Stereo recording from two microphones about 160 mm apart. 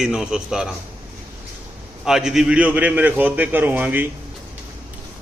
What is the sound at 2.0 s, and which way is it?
A man's voice, 5° right (ahead or behind).